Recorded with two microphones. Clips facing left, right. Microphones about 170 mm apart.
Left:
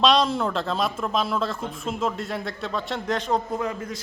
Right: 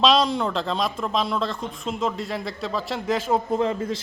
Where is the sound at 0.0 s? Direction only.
Centre (ahead or behind).